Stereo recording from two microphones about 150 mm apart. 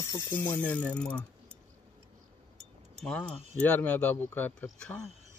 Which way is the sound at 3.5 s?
10° left (ahead or behind).